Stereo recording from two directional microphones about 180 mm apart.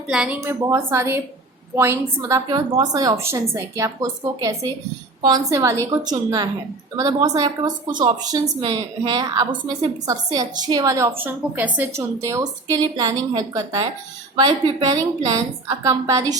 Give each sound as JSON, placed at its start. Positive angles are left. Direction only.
{"t": 0.1, "sound": "a woman's voice", "side_deg": -5}
{"t": 0.3, "sound": "speech", "side_deg": -15}